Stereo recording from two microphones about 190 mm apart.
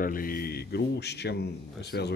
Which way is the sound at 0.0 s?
50° left (ahead or behind).